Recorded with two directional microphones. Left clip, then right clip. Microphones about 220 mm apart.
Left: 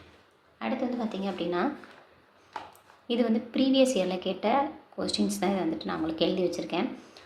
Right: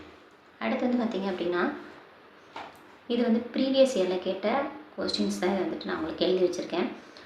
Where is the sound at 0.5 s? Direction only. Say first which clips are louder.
Right 2 dB; 15° left (ahead or behind).